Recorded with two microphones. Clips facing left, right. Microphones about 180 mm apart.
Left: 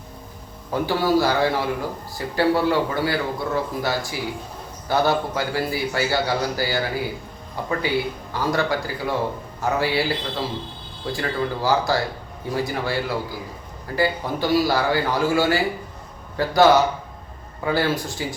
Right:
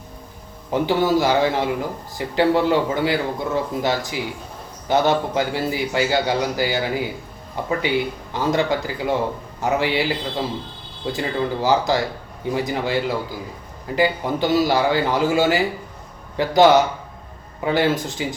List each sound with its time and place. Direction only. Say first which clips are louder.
0.7 s a man's voice: right 2 dB; 20° right (ahead or behind)